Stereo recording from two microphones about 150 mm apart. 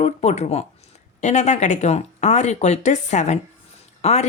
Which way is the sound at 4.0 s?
45° left (ahead or behind).